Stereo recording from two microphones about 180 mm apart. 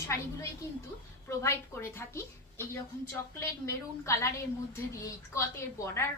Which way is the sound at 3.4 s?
15° left (ahead or behind).